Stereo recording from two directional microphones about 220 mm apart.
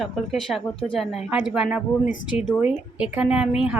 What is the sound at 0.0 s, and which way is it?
A woman's voice, centre (ahead or behind).